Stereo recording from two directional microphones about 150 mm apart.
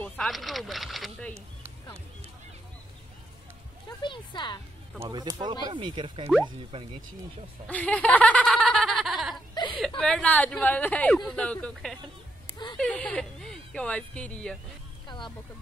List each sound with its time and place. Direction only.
0.0 s a sound: 10° left (ahead or behind)
0.3 s speech: centre (ahead or behind)
4.0 s speech: 30° left (ahead or behind)
5.1 s speech: 25° right (ahead or behind)
7.6 s a sound: 10° left (ahead or behind)
9.8 s a woman's voice: 5° left (ahead or behind)
15.0 s speech: 30° left (ahead or behind)